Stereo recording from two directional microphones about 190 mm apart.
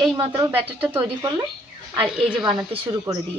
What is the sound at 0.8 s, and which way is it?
Speech, 10° right (ahead or behind).